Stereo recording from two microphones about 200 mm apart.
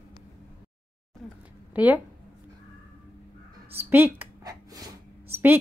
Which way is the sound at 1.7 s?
10° right (ahead or behind).